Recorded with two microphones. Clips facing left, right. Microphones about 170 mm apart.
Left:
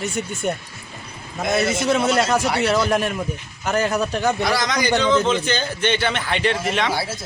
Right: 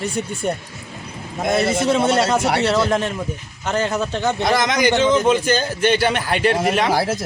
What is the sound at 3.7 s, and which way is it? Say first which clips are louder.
Speech: even; 25° right (ahead or behind).